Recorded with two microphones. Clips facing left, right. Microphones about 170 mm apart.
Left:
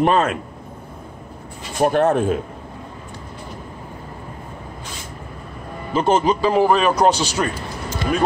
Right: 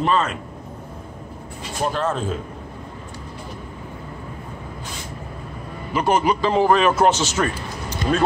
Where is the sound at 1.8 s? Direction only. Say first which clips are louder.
Left 7 dB; 60° left (ahead or behind).